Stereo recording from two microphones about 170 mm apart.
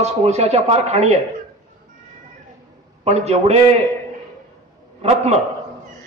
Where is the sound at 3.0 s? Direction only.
40° right (ahead or behind).